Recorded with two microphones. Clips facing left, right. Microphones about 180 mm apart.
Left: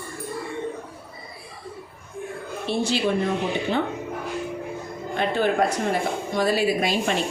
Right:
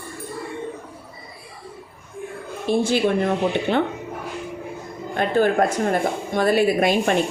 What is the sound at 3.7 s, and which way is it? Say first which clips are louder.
Speech: right 3 dB; 70° right (ahead or behind).